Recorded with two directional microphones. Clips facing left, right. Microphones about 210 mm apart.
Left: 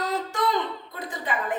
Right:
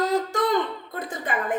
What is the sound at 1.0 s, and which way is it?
Speech, 50° right (ahead or behind).